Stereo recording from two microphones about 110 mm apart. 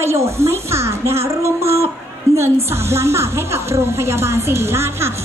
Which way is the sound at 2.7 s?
25° right (ahead or behind).